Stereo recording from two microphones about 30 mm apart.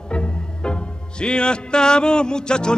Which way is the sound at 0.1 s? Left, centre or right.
Left.